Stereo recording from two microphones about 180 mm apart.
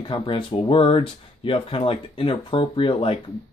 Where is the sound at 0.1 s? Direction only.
25° left (ahead or behind).